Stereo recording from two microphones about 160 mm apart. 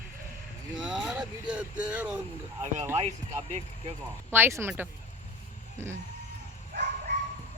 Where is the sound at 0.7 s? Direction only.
5° right (ahead or behind).